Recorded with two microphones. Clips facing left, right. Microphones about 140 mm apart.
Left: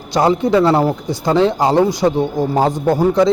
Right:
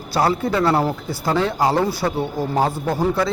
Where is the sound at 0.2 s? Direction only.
20° left (ahead or behind).